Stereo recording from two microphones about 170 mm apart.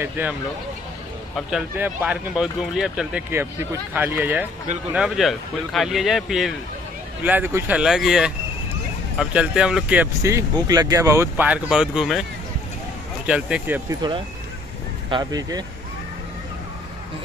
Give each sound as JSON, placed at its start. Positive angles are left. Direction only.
{"t": 0.0, "sound": "speech", "side_deg": -10}
{"t": 1.8, "sound": "speech", "side_deg": -5}
{"t": 7.2, "sound": "speech", "side_deg": -10}
{"t": 13.3, "sound": "speech", "side_deg": -5}
{"t": 13.8, "sound": "speech", "side_deg": -25}